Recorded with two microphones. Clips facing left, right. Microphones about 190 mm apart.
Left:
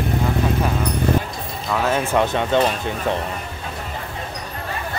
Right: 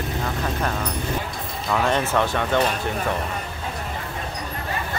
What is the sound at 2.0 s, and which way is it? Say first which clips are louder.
Speech: left 3 dB; 15° left (ahead or behind).